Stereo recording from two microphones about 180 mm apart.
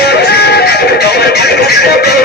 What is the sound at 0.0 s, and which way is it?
Music, 65° left (ahead or behind).